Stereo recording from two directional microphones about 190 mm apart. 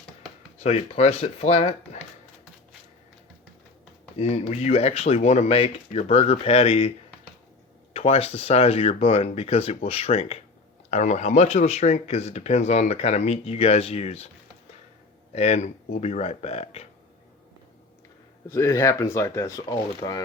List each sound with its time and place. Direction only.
0.6 s speech: 35° left (ahead or behind)
4.2 s speech: 35° left (ahead or behind)
7.9 s speech: 30° left (ahead or behind)
15.3 s speech: 35° left (ahead or behind)
18.4 s speech: 15° left (ahead or behind)